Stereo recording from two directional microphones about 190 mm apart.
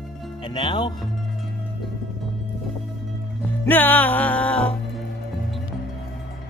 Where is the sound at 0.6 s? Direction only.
25° left (ahead or behind).